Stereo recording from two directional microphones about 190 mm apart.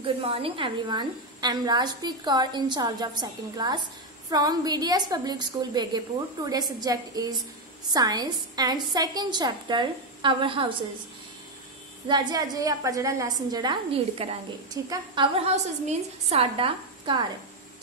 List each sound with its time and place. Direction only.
0.0 s a woman's voice: 30° right (ahead or behind)
12.1 s a woman's voice: 20° right (ahead or behind)
15.3 s a woman's voice: 35° right (ahead or behind)